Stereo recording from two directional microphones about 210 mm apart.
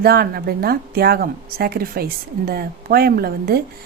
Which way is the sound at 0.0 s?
45° right (ahead or behind).